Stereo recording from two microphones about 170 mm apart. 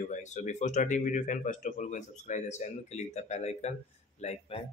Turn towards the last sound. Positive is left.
turn(degrees=40)  # may be behind; listen again after turning